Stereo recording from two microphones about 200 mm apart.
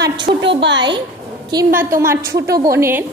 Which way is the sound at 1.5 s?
15° right (ahead or behind).